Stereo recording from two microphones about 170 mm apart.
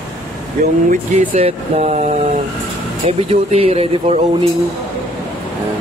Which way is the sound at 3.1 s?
35° right (ahead or behind).